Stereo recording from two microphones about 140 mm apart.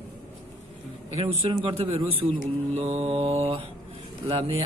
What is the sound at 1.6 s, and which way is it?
Mantra, 45° right (ahead or behind).